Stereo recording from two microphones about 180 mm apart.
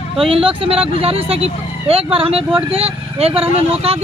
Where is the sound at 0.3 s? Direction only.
30° right (ahead or behind).